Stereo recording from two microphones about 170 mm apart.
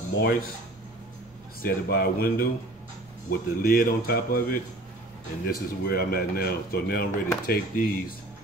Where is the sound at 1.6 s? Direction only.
60° left (ahead or behind).